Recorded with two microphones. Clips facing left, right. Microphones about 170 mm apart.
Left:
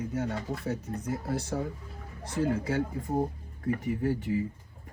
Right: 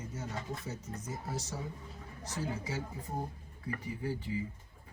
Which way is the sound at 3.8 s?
75° left (ahead or behind).